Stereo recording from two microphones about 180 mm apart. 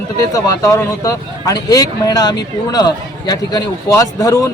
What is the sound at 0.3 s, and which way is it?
A man's voice, 15° left (ahead or behind).